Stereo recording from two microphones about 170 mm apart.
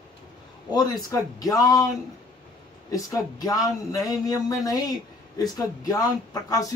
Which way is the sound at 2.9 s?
20° left (ahead or behind).